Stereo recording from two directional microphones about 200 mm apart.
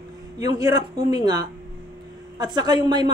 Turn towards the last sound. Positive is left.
turn(degrees=-20)  # may be behind; listen again after turning